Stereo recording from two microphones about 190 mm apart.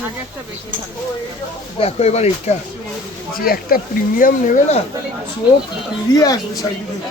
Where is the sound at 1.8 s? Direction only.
35° left (ahead or behind).